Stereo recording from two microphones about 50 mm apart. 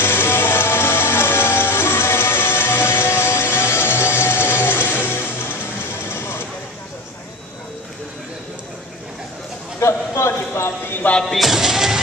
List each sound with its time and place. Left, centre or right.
0.0 s music: left
6.1 s a sound: left
9.8 s clip-clop: left
11.3 s music: centre